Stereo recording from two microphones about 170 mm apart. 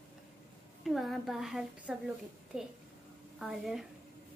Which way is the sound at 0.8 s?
Centre (ahead or behind).